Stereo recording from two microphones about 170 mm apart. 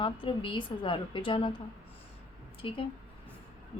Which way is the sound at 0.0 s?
30° left (ahead or behind).